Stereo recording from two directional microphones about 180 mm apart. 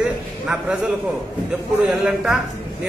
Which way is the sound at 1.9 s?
Centre (ahead or behind).